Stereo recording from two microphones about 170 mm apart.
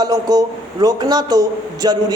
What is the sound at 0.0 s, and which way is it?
A man's voice, 20° right (ahead or behind).